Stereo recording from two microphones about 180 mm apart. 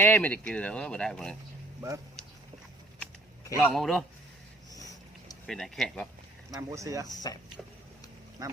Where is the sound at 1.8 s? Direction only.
15° right (ahead or behind).